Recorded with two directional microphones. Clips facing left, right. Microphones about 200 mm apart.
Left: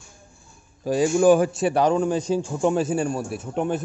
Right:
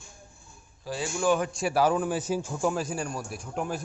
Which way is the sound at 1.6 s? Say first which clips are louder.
Left 5 dB; 5° right (ahead or behind).